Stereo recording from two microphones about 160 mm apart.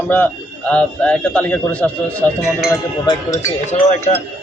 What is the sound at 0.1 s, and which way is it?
A man's voice, 10° left (ahead or behind).